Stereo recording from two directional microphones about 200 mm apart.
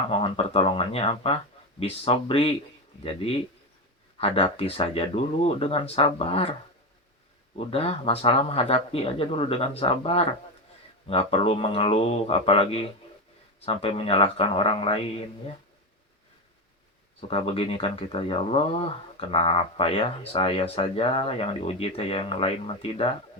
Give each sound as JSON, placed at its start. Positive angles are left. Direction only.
{"t": 0.1, "sound": "speech", "side_deg": 25}
{"t": 17.2, "sound": "speech", "side_deg": 30}